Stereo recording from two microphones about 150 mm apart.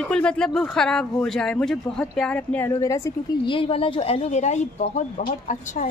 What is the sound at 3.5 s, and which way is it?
A woman's voice, 35° left (ahead or behind).